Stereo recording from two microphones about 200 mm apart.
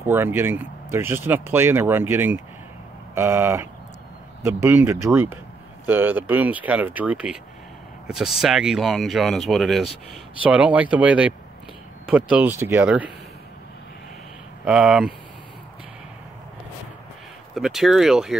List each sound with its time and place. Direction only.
0.0 s speech: 10° right (ahead or behind)
14.6 s speech: 5° right (ahead or behind)
17.6 s speech: centre (ahead or behind)